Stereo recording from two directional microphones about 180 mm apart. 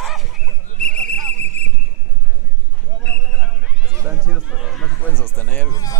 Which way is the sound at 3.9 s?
10° right (ahead or behind).